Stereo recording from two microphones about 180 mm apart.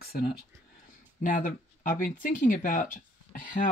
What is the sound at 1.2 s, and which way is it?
Speech, 50° left (ahead or behind).